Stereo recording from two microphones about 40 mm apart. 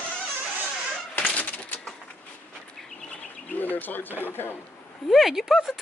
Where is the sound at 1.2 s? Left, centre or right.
Left.